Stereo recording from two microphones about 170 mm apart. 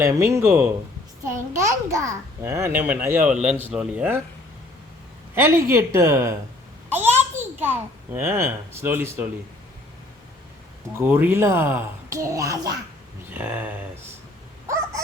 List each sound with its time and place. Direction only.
0.0 s a child's voice: 15° right (ahead or behind)
5.3 s a child's voice: 15° right (ahead or behind)
6.9 s a sound: 10° right (ahead or behind)
7.6 s a child's voice: 10° right (ahead or behind)
11.1 s a child's voice: 10° right (ahead or behind)